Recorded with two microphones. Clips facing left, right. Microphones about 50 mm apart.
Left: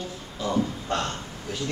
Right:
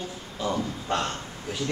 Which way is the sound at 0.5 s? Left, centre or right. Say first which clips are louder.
Left 3 dB; centre.